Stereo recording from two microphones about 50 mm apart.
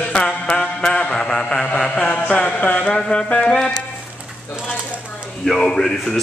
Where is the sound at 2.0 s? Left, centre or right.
Left.